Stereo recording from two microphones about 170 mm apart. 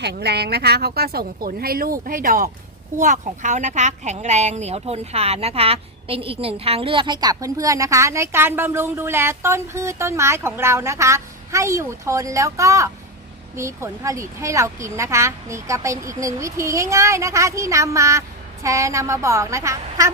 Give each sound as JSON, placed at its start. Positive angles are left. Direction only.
{"t": 0.0, "sound": "speech", "side_deg": -75}